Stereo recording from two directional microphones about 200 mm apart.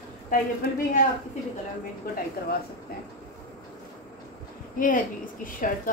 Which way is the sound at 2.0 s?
45° left (ahead or behind).